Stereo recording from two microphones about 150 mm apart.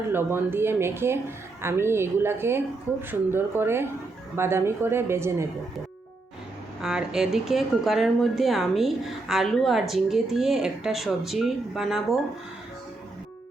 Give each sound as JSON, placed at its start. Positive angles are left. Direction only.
{"t": 0.1, "sound": "a woman's voice", "side_deg": -15}
{"t": 6.8, "sound": "speech", "side_deg": -5}